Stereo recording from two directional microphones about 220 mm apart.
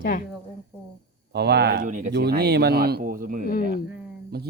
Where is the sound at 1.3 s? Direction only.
50° right (ahead or behind).